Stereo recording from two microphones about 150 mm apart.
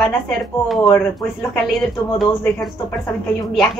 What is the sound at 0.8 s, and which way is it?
Speech, 15° left (ahead or behind).